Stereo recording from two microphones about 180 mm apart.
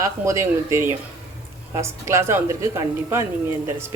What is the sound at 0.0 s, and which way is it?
Speech, 15° right (ahead or behind).